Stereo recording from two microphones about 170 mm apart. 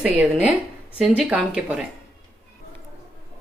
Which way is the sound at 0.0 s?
10° right (ahead or behind).